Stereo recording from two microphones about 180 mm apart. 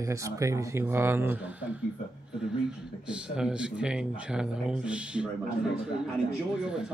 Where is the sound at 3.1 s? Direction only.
5° right (ahead or behind).